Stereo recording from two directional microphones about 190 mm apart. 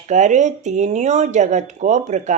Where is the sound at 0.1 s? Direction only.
40° right (ahead or behind).